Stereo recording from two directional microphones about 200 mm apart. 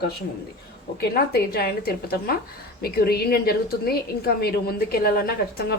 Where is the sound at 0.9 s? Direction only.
50° left (ahead or behind).